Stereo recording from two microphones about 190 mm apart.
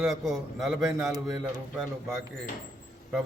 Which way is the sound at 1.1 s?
20° right (ahead or behind).